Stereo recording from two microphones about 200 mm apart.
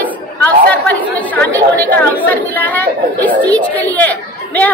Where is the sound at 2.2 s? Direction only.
10° left (ahead or behind).